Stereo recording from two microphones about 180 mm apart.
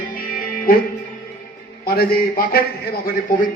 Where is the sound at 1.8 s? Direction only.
55° left (ahead or behind).